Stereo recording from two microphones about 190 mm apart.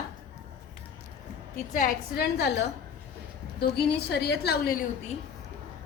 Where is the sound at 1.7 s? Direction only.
50° left (ahead or behind).